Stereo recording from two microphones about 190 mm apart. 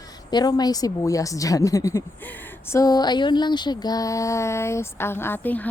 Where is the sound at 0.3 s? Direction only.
20° left (ahead or behind).